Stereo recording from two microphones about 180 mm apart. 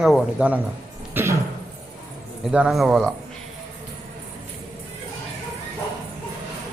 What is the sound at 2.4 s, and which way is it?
Speech, 5° right (ahead or behind).